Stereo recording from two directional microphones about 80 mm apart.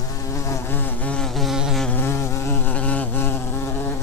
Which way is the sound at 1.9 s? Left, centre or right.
Left.